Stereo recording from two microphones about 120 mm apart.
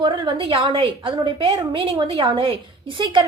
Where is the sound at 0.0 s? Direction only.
40° right (ahead or behind).